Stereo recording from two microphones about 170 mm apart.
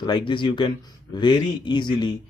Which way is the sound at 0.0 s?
25° left (ahead or behind).